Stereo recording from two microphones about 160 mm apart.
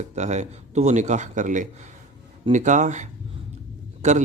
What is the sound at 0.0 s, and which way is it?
Speech, 45° right (ahead or behind).